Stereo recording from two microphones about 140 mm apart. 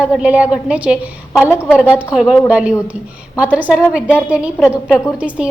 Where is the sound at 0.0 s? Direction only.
10° right (ahead or behind).